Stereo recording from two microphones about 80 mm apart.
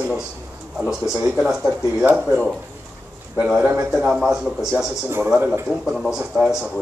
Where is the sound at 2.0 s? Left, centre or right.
Right.